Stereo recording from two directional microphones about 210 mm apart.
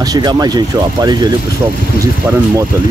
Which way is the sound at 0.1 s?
20° right (ahead or behind).